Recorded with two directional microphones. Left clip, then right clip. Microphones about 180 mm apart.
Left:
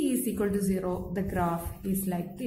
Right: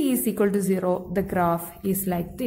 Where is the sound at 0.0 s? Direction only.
35° right (ahead or behind).